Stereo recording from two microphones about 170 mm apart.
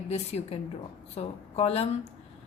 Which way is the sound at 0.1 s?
40° left (ahead or behind).